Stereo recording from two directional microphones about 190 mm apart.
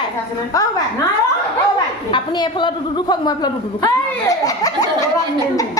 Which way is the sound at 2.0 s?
25° left (ahead or behind).